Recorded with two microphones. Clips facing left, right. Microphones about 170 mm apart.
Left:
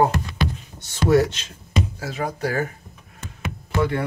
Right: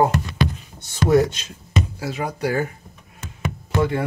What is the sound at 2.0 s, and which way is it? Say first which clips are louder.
Speech: right 1 dB; 25° right (ahead or behind).